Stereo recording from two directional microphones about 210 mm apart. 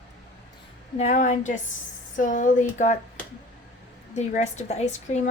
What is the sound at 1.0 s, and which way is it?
Speech, 35° left (ahead or behind).